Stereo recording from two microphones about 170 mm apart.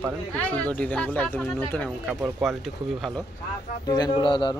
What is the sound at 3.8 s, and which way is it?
Speech, 25° left (ahead or behind).